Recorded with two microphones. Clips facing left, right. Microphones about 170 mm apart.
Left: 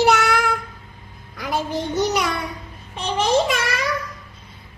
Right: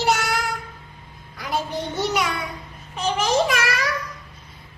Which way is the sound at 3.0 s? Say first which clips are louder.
Left 1 dB; 25° left (ahead or behind).